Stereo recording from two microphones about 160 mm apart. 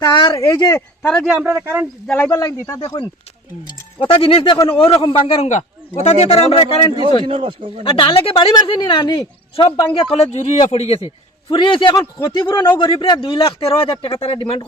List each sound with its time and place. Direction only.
0.0 s speech: 30° left (ahead or behind)
1.0 s speech: centre (ahead or behind)
2.0 s speech: 10° left (ahead or behind)
2.3 s speech: 20° left (ahead or behind)
3.7 s speech: 35° left (ahead or behind)
7.3 s speech: 35° right (ahead or behind)
7.9 s speech: 35° left (ahead or behind)